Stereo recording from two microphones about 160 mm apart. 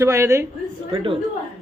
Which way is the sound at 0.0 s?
20° right (ahead or behind).